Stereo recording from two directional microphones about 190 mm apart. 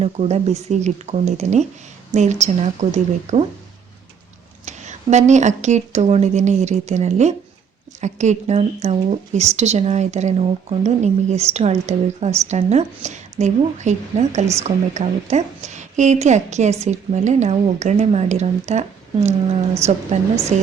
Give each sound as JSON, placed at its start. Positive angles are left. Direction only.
{"t": 0.0, "sound": "speech", "side_deg": -35}
{"t": 4.6, "sound": "speech", "side_deg": -40}